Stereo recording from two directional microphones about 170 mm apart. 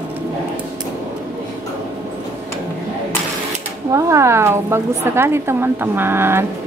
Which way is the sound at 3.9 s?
20° right (ahead or behind).